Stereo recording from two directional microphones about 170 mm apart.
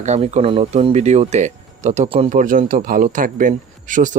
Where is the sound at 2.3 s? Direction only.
50° right (ahead or behind).